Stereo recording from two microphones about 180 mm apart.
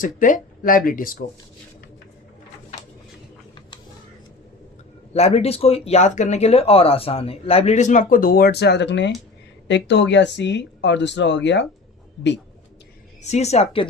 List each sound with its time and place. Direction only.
0.0 s speech: 45° left (ahead or behind)
5.1 s speech: 35° left (ahead or behind); by 11.6 s 80° left
13.2 s speech: 40° left (ahead or behind)